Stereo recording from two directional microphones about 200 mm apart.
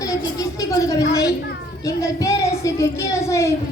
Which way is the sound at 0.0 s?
15° left (ahead or behind).